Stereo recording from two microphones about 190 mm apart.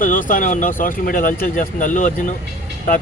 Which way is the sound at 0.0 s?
45° left (ahead or behind).